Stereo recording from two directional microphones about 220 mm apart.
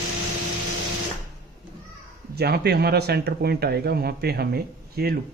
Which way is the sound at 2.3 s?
45° right (ahead or behind).